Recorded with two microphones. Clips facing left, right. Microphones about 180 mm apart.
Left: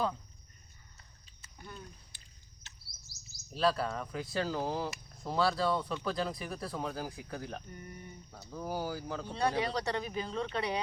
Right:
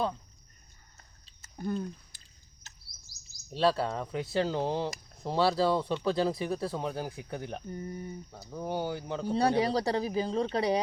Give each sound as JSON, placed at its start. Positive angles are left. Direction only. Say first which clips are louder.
{"t": 1.4, "sound": "a sound", "louder": "right 15 dB", "side_deg": -45}
{"t": 2.6, "sound": "bird", "louder": "right 3 dB", "side_deg": -45}
{"t": 3.5, "sound": "speech", "louder": "right 3 dB", "side_deg": -25}